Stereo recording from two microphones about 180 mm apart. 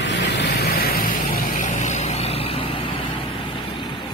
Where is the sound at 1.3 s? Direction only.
40° left (ahead or behind).